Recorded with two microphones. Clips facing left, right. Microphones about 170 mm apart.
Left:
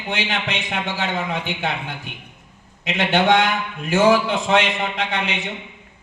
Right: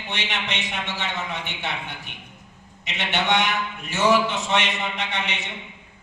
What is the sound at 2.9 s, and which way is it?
A man's voice, 55° left (ahead or behind).